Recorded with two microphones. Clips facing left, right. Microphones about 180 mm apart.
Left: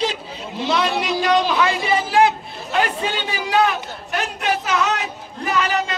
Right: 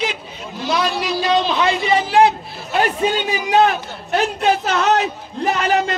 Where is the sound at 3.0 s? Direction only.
20° right (ahead or behind).